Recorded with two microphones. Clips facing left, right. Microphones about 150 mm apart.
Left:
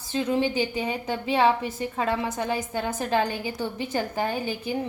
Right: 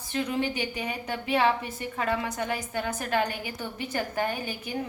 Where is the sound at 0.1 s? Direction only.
20° left (ahead or behind).